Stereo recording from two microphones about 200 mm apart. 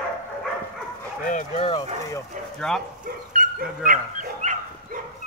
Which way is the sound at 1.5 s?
25° left (ahead or behind).